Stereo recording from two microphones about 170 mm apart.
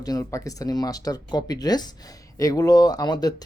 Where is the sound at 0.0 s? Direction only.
20° left (ahead or behind).